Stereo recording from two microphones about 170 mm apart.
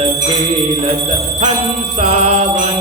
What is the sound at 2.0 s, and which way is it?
Music, 35° right (ahead or behind).